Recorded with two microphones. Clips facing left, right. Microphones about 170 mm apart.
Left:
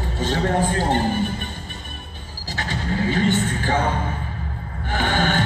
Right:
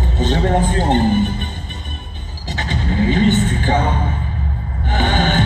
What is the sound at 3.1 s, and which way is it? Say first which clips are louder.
Vehicle: right 5 dB; 20° right (ahead or behind).